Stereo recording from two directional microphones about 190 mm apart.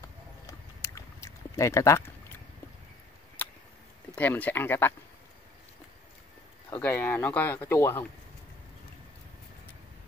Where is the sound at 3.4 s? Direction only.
10° left (ahead or behind).